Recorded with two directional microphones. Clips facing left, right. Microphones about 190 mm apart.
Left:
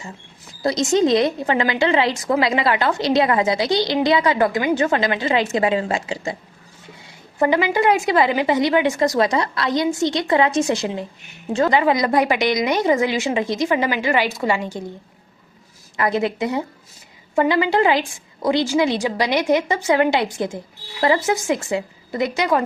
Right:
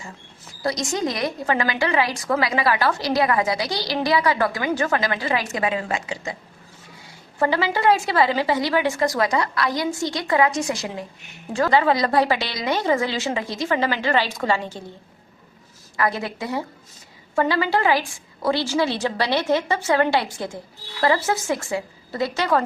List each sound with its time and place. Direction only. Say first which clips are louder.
0.6 s a woman's voice: left 7 dB; 20° left (ahead or behind)
7.3 s a woman's voice: left 4 dB; 20° left (ahead or behind)
16.0 s a woman's voice: left 4 dB; 20° left (ahead or behind)